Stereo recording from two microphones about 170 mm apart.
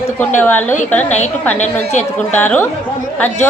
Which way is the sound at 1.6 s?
45° left (ahead or behind).